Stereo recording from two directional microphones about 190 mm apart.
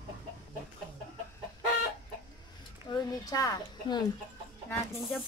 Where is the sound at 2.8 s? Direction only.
20° left (ahead or behind).